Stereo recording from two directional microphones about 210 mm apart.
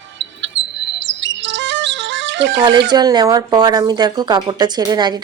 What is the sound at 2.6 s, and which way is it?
Speech, 20° right (ahead or behind).